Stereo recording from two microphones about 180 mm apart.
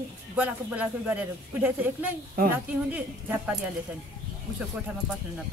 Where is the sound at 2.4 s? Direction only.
55° right (ahead or behind).